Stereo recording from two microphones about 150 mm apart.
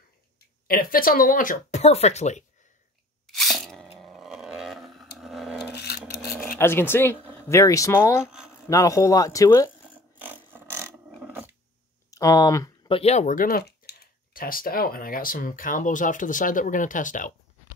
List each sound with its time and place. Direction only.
0.7 s speech: 75° left (ahead or behind); by 2.4 s 50° left (ahead or behind)
3.3 s roar: centre (ahead or behind)
5.2 s wood: centre (ahead or behind)
6.6 s speech: 15° left (ahead or behind)
8.3 s a sound: 5° right (ahead or behind)
8.6 s speech: 20° left (ahead or behind)
9.8 s a sound: 10° right (ahead or behind)
12.1 s speech: 25° left (ahead or behind)
12.8 s speech: 40° left (ahead or behind); by 17.3 s 60° left (ahead or behind)